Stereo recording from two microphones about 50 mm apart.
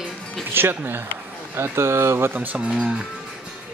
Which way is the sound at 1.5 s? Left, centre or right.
Right.